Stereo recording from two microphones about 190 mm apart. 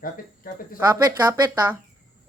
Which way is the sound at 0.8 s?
10° right (ahead or behind).